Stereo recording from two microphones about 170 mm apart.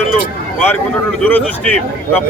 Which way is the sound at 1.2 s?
10° left (ahead or behind).